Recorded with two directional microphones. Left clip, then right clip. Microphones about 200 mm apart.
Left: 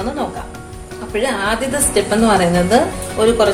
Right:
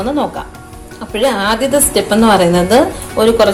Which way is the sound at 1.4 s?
40° right (ahead or behind).